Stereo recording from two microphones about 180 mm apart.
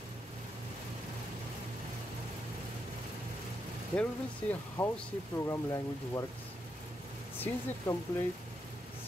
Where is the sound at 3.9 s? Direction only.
10° left (ahead or behind).